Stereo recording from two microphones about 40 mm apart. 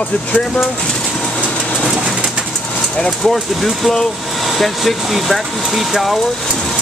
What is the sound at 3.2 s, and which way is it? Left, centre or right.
Speech, centre.